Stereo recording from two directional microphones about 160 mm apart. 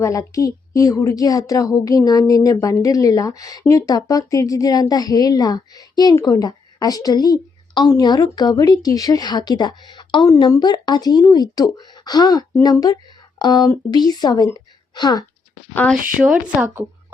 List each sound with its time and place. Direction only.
0.0 s a woman's voice: 20° left (ahead or behind)
15.7 s speech: 10° left (ahead or behind)
16.1 s speech: 5° right (ahead or behind)